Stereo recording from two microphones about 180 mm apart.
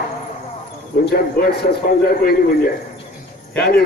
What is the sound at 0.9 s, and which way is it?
Speech, 55° left (ahead or behind).